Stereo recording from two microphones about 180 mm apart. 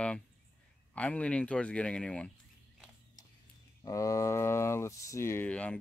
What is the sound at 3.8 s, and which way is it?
Speech, 20° left (ahead or behind).